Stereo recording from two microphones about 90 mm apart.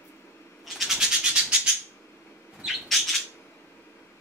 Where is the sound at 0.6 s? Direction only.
5° right (ahead or behind).